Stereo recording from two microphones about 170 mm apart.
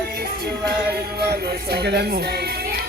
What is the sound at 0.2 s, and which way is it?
Music, 65° right (ahead or behind).